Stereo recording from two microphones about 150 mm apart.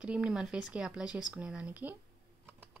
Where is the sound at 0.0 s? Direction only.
5° right (ahead or behind).